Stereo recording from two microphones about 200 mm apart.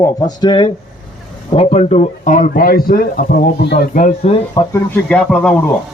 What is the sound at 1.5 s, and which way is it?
Speech, 35° left (ahead or behind).